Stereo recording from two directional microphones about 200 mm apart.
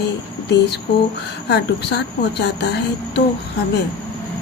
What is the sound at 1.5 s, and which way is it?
A woman's voice, 55° left (ahead or behind).